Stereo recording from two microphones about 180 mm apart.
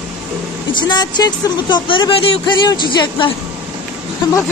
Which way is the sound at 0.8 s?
25° left (ahead or behind).